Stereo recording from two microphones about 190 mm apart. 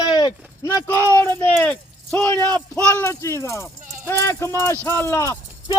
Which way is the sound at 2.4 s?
20° right (ahead or behind).